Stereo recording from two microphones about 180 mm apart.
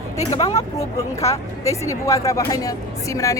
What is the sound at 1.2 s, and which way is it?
Speech, 15° left (ahead or behind).